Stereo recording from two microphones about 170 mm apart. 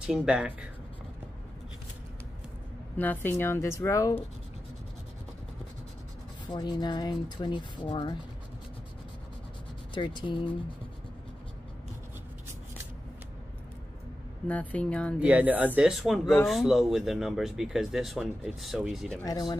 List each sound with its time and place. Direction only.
0.0 s speech: 5° right (ahead or behind)
3.0 s a woman's voice: 10° left (ahead or behind)
6.5 s speech: 25° left (ahead or behind)
9.9 s speech: 30° left (ahead or behind)
14.5 s a woman's voice: 10° left (ahead or behind)
15.1 s speech: 10° right (ahead or behind)
19.2 s speech: 20° left (ahead or behind)